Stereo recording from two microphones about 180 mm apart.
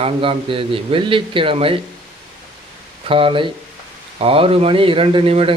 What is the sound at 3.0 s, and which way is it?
A man's voice, 30° right (ahead or behind).